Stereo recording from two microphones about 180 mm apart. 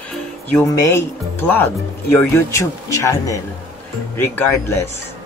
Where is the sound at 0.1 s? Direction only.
5° left (ahead or behind).